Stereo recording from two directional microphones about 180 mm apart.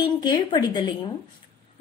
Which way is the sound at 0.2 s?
25° left (ahead or behind).